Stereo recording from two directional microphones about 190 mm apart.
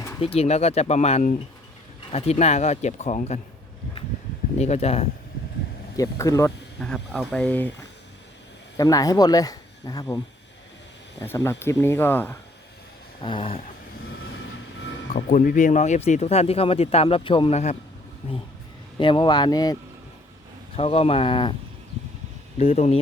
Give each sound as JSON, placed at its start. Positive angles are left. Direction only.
{"t": 0.2, "sound": "speech", "side_deg": 30}
{"t": 4.5, "sound": "speech", "side_deg": 35}
{"t": 6.0, "sound": "speech", "side_deg": 15}
{"t": 6.7, "sound": "speech", "side_deg": 5}
{"t": 8.8, "sound": "speech", "side_deg": 20}
{"t": 11.2, "sound": "speech", "side_deg": 15}
{"t": 13.2, "sound": "speech", "side_deg": 25}
{"t": 15.1, "sound": "speech", "side_deg": 45}
{"t": 18.9, "sound": "speech", "side_deg": 25}
{"t": 20.7, "sound": "speech", "side_deg": 30}
{"t": 22.5, "sound": "speech", "side_deg": 35}